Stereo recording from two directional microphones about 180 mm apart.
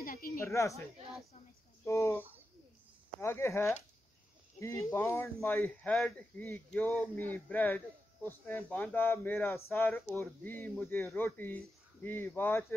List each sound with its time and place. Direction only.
0.0 s a sound: 50° left (ahead or behind)
0.4 s speech: 15° left (ahead or behind)
1.9 s speech: 15° left (ahead or behind)
2.1 s bird: 10° right (ahead or behind)
3.2 s speech: 15° left (ahead or behind)